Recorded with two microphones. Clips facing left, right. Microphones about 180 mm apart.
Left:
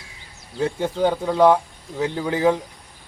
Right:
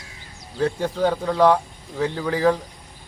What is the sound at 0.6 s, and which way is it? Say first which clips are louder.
Speech: even; 20° left (ahead or behind).